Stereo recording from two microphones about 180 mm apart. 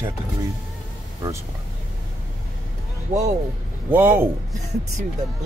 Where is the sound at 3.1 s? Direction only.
40° right (ahead or behind).